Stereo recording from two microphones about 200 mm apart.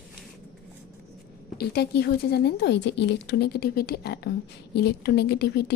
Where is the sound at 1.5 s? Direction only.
55° left (ahead or behind).